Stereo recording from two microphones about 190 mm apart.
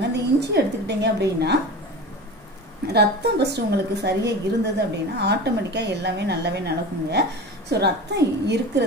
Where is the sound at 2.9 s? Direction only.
60° right (ahead or behind).